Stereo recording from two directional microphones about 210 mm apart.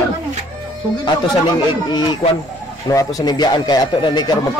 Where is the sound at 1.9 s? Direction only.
20° left (ahead or behind).